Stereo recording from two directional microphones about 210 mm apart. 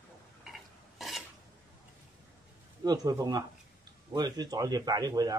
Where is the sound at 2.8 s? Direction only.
15° right (ahead or behind).